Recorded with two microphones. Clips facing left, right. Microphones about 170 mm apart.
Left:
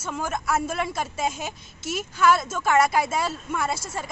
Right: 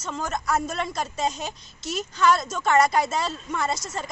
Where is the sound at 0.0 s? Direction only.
5° left (ahead or behind).